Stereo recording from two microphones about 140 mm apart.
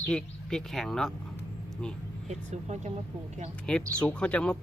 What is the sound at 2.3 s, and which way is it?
Speech, 55° right (ahead or behind).